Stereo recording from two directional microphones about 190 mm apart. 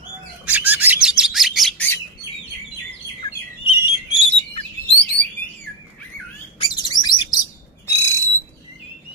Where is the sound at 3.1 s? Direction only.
25° left (ahead or behind).